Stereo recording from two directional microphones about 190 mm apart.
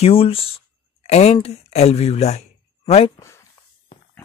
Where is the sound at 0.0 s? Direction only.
30° left (ahead or behind).